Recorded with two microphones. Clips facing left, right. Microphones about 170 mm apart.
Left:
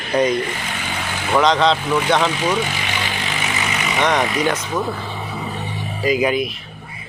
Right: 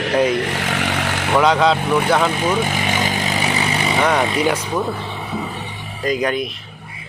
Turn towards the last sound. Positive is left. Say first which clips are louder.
# left 2 dB
turn(degrees=5)  # may be behind; listen again after turning